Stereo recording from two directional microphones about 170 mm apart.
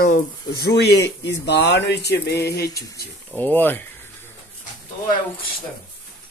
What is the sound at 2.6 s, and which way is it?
Speech, 65° left (ahead or behind).